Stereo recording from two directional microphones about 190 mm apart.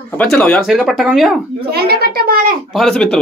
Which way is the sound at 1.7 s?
55° right (ahead or behind).